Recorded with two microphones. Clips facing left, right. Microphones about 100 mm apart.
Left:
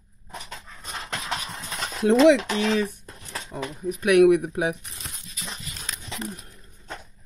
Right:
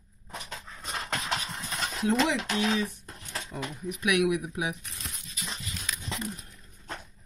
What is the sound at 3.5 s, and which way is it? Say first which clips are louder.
Speech: left 5 dB; 20° left (ahead or behind).